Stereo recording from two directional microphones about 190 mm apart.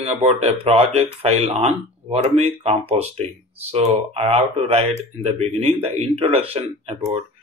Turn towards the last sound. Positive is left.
turn(degrees=-30)  # may be behind; listen again after turning